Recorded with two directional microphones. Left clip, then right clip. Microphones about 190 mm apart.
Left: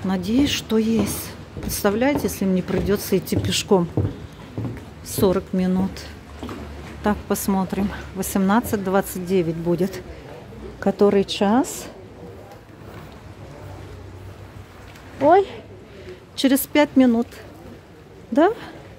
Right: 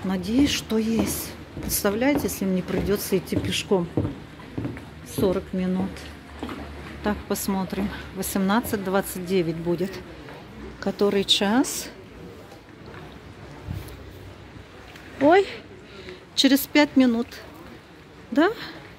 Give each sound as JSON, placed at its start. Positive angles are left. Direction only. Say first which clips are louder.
{"t": 0.1, "sound": "speech", "louder": "left 2 dB", "side_deg": 10}
{"t": 5.0, "sound": "a woman's voice", "louder": "left 4 dB", "side_deg": 25}
{"t": 9.8, "sound": "a woman's voice", "louder": "left 4 dB", "side_deg": 25}
{"t": 15.2, "sound": "speech", "louder": "left 3 dB", "side_deg": 0}
{"t": 16.3, "sound": "speech", "louder": "left 1 dB", "side_deg": 10}
{"t": 18.3, "sound": "speech", "louder": "left 4 dB", "side_deg": 15}